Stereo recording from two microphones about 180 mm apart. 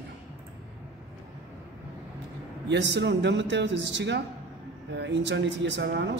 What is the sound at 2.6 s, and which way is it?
Speech, 80° right.